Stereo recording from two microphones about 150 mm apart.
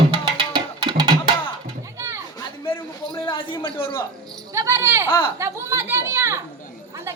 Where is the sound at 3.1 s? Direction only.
35° left (ahead or behind).